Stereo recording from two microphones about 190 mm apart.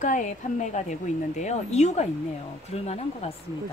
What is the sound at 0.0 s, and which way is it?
A woman's voice, 40° left (ahead or behind).